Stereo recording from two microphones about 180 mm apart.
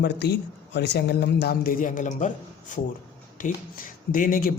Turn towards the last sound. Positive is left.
turn(degrees=50)  # may be behind; listen again after turning